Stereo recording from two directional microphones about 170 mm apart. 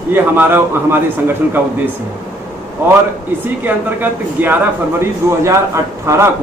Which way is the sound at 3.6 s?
10° right (ahead or behind).